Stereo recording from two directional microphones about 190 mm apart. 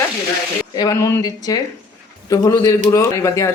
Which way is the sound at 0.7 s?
20° left (ahead or behind).